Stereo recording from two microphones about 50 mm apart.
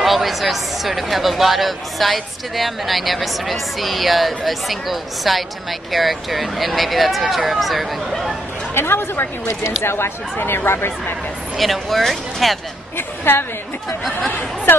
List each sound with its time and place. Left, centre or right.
0.0 s speech: centre
8.7 s speech: left
11.5 s speech: centre
12.9 s speech: left